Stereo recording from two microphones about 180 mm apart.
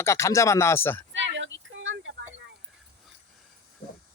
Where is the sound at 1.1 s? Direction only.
90° right.